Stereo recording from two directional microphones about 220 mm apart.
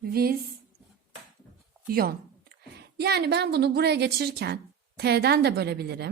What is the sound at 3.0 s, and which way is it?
A woman's voice, 45° right (ahead or behind).